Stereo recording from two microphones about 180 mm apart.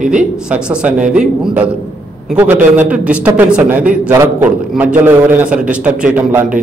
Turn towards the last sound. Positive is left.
turn(degrees=-10)  # may be behind; listen again after turning